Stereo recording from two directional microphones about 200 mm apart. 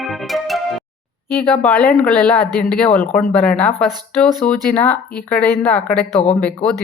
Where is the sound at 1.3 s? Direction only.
10° left (ahead or behind).